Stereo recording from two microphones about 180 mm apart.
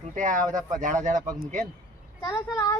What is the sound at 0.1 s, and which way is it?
Speech, 45° right (ahead or behind).